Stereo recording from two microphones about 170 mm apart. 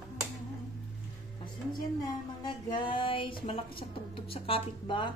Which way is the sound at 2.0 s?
25° left (ahead or behind).